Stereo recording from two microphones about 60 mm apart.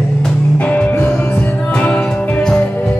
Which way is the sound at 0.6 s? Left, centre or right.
Left.